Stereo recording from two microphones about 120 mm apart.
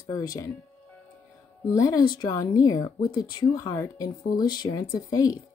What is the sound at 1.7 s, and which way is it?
Speech, 30° left (ahead or behind).